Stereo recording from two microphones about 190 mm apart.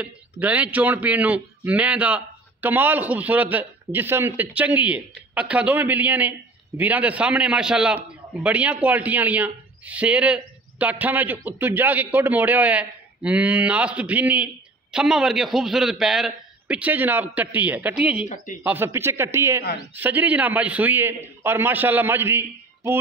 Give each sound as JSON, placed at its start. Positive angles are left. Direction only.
{"t": 0.0, "sound": "a man's voice", "side_deg": -10}
{"t": 18.3, "sound": "speech", "side_deg": 45}
{"t": 18.6, "sound": "a man's voice", "side_deg": -10}